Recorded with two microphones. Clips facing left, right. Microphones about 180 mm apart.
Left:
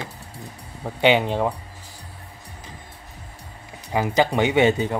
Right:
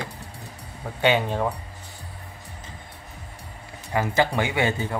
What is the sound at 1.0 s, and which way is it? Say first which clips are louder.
Speech: left 3 dB; 15° left (ahead or behind).